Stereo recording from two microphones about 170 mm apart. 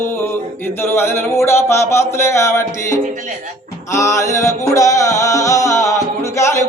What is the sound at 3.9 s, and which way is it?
Music, 20° left (ahead or behind).